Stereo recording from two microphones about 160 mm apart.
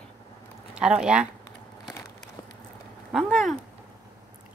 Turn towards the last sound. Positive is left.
turn(degrees=0)  # may be behind; listen again after turning